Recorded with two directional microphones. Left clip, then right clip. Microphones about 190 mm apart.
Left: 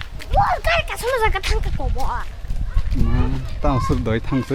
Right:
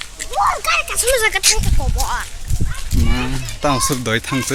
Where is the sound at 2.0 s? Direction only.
5° left (ahead or behind).